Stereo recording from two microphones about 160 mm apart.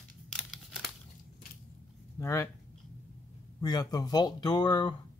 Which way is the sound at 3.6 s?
25° left (ahead or behind).